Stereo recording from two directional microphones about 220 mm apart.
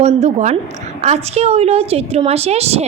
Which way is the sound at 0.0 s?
30° right (ahead or behind).